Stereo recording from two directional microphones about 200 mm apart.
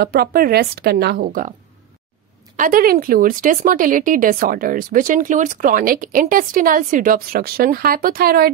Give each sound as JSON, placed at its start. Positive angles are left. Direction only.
{"t": 0.0, "sound": "speech", "side_deg": -50}
{"t": 2.5, "sound": "speech", "side_deg": -45}